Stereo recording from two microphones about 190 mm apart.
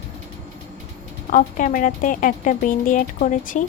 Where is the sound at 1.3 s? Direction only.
45° left (ahead or behind).